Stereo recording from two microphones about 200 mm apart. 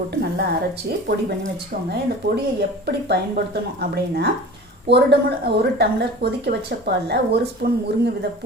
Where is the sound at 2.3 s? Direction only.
55° right (ahead or behind).